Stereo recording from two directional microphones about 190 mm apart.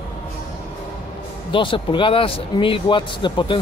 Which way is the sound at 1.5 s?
25° left (ahead or behind).